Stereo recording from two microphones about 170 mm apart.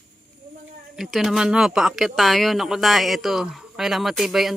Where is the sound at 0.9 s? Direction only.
Centre (ahead or behind).